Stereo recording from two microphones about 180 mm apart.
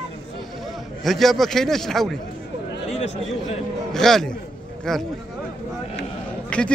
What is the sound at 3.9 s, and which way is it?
A man's voice, centre (ahead or behind).